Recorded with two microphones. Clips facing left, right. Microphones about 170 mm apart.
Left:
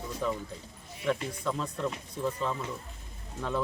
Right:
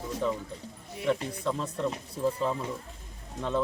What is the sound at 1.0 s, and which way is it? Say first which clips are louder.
Speech: right 2 dB; centre (ahead or behind).